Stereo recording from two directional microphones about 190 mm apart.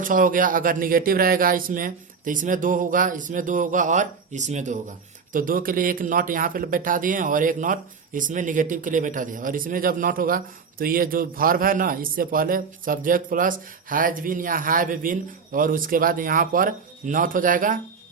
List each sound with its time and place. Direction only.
0.0 s speech: 45° right (ahead or behind)